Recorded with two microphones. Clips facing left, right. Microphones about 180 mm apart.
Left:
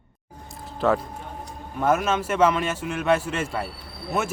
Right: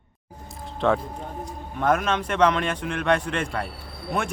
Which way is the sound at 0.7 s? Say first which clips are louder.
Even; 5° left (ahead or behind).